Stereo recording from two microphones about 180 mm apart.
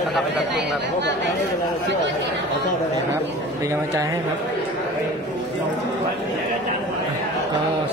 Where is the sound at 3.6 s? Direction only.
15° right (ahead or behind).